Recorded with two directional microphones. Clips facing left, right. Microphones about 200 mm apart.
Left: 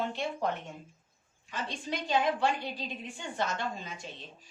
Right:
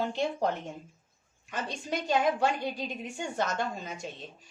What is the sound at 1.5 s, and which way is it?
A woman's voice, 45° right (ahead or behind).